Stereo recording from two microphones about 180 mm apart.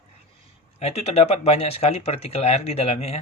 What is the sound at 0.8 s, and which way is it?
Speech, 35° left (ahead or behind).